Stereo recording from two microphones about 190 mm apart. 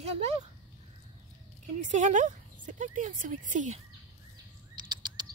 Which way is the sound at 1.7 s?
40° right (ahead or behind).